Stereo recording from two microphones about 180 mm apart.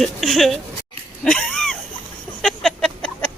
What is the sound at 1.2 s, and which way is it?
Cat, 5° left (ahead or behind).